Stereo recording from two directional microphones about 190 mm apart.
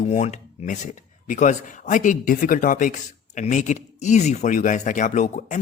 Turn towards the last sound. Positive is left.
turn(degrees=40)  # may be behind; listen again after turning